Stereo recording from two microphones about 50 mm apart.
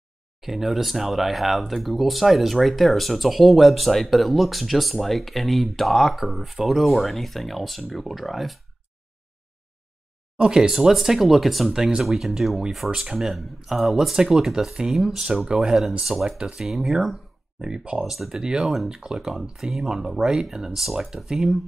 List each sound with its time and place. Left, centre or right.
0.4 s speech: centre
10.3 s speech: centre
10.7 s speech: centre
11.7 s speech: centre
16.3 s speech: centre
16.5 s speech: centre
17.6 s speech: centre
18.0 s speech: centre
18.4 s speech: centre